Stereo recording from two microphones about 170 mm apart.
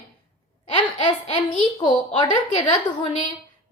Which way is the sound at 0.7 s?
30° left (ahead or behind).